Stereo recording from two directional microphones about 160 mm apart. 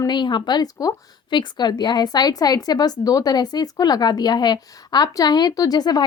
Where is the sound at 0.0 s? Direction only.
30° left (ahead or behind).